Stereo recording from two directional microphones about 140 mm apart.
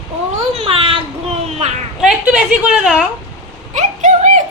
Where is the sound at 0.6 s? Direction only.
40° right (ahead or behind).